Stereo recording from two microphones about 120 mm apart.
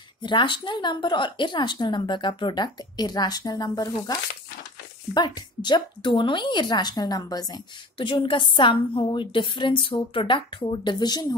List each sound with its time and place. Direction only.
0.2 s speech: 40° left (ahead or behind)